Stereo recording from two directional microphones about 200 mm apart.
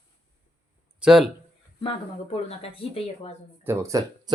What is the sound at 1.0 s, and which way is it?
Speech, centre (ahead or behind).